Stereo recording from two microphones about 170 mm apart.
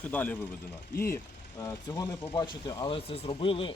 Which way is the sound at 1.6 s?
15° left (ahead or behind).